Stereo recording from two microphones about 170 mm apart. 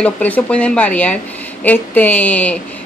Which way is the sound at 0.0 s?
10° left (ahead or behind).